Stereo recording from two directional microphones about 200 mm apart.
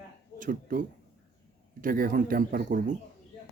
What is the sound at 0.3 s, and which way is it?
Speech, 40° right (ahead or behind).